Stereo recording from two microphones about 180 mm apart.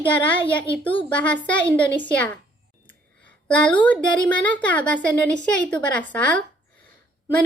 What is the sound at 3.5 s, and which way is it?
A woman's voice, 5° left (ahead or behind).